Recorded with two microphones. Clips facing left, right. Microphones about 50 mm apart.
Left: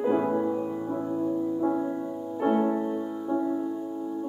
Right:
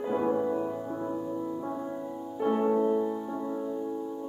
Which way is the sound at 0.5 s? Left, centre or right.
Centre.